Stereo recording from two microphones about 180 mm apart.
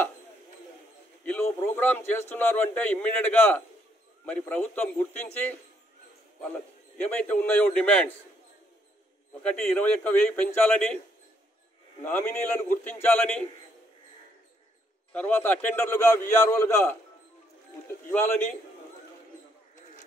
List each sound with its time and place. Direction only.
1.2 s a man's voice: 10° left (ahead or behind)
7.0 s a man's voice: 10° left (ahead or behind)
9.4 s a man's voice: 10° left (ahead or behind)
12.0 s a man's voice: 10° left (ahead or behind)
15.1 s a man's voice: 10° left (ahead or behind)
18.1 s a man's voice: 10° left (ahead or behind)